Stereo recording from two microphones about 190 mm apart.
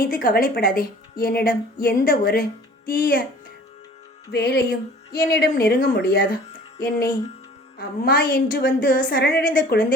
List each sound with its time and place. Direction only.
0.0 s a woman's voice: 50° left (ahead or behind)
4.3 s a woman's voice: 55° left (ahead or behind)